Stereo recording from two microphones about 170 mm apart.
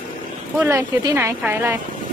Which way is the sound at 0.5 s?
15° right (ahead or behind).